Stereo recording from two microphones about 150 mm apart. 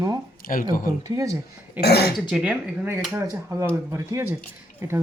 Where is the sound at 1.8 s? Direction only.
90° left.